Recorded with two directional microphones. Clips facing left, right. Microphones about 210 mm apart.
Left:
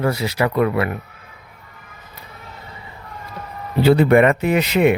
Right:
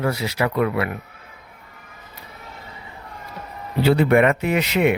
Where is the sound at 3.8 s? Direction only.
40° left (ahead or behind).